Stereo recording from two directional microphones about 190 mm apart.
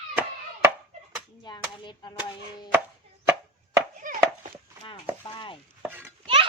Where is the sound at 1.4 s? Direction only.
25° left (ahead or behind).